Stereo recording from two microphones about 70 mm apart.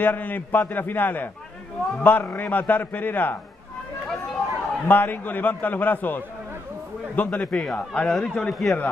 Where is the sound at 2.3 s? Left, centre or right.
Left.